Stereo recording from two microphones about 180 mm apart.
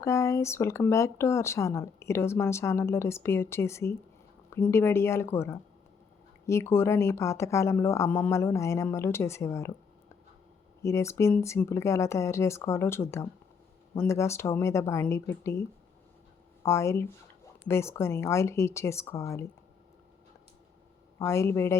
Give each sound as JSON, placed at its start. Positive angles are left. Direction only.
{"t": 0.0, "sound": "speech", "side_deg": 15}
{"t": 10.8, "sound": "speech", "side_deg": 15}
{"t": 16.6, "sound": "speech", "side_deg": 15}
{"t": 21.2, "sound": "speech", "side_deg": 15}